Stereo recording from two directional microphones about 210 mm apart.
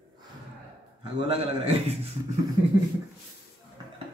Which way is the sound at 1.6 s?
30° right (ahead or behind).